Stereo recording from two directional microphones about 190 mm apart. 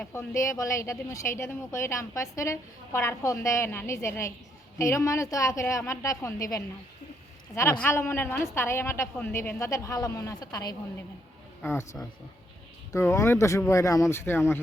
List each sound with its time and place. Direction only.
0.0 s speech: 10° left (ahead or behind)